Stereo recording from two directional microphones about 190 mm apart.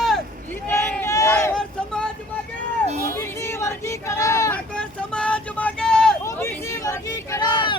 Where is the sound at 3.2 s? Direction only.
15° left (ahead or behind).